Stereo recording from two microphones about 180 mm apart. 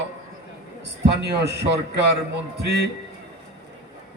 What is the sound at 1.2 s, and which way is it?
Speech, 70° right (ahead or behind).